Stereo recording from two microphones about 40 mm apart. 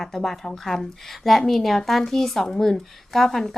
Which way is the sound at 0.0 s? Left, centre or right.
Centre.